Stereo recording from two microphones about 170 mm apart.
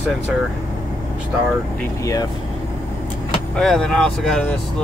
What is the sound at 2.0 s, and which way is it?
Speech, 20° left (ahead or behind).